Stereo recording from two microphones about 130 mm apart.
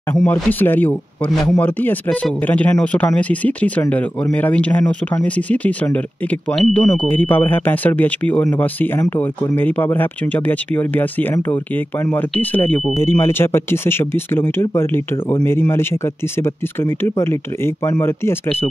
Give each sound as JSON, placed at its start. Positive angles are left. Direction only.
{"t": 0.1, "sound": "speech", "side_deg": 15}
{"t": 1.3, "sound": "a man's voice", "side_deg": 0}
{"t": 1.6, "sound": "speech", "side_deg": 15}